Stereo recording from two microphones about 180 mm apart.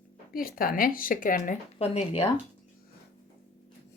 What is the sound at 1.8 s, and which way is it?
Speech, 35° left (ahead or behind).